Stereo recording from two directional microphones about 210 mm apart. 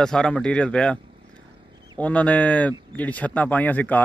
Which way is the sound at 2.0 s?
5° left (ahead or behind).